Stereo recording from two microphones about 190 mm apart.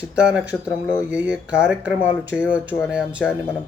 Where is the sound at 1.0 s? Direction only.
5° right (ahead or behind).